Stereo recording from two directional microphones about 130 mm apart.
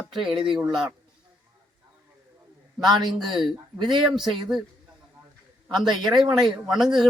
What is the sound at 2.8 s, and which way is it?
Speech, 35° right (ahead or behind).